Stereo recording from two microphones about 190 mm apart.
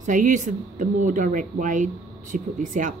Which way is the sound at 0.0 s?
40° right (ahead or behind).